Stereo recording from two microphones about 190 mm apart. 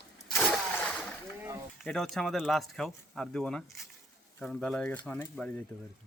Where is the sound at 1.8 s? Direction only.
5° left (ahead or behind).